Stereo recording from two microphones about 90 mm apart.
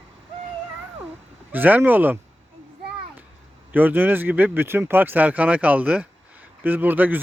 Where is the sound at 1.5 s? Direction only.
20° right (ahead or behind).